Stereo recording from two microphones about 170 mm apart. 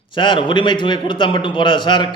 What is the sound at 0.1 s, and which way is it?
A man's voice, 30° left (ahead or behind).